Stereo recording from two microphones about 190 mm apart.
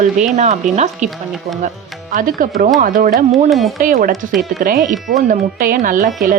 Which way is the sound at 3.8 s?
45° right (ahead or behind).